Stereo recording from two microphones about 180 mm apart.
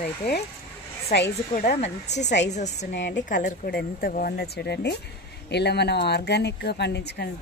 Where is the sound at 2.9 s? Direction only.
75° left (ahead or behind).